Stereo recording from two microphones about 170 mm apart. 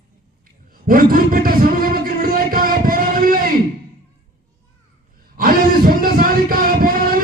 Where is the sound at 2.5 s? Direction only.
55° right (ahead or behind).